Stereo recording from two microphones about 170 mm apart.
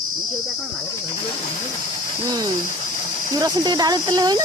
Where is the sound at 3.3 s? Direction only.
25° right (ahead or behind).